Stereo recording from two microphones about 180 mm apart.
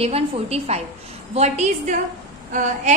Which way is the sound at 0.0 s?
35° right (ahead or behind).